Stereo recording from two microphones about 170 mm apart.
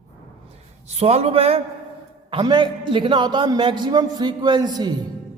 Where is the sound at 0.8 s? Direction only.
40° right (ahead or behind); by 4.9 s 25° right (ahead or behind).